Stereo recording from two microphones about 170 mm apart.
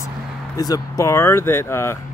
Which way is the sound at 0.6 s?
20° left (ahead or behind).